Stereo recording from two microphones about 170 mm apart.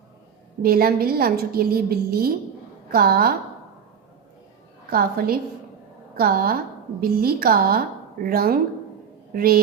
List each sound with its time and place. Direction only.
0.6 s a woman's voice: 60° right (ahead or behind)
4.9 s a woman's voice: 60° right (ahead or behind)